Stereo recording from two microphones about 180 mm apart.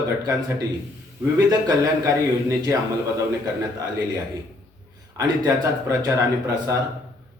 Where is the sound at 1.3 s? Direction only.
20° right (ahead or behind).